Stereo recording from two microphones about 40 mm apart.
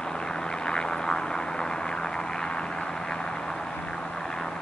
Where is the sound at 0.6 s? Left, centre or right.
Centre.